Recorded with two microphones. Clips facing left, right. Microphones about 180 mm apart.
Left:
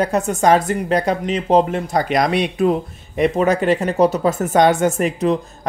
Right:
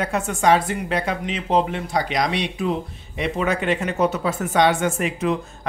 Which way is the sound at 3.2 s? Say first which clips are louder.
Left 7 dB; 40° left (ahead or behind).